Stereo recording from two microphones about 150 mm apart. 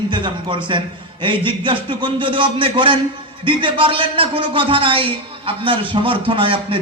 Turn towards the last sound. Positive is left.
turn(degrees=-35)  # may be behind; listen again after turning